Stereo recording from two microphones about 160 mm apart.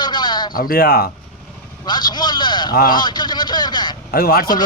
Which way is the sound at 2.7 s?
60° left (ahead or behind).